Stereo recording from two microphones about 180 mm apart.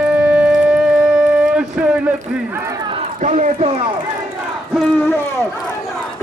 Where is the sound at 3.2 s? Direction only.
45° right (ahead or behind).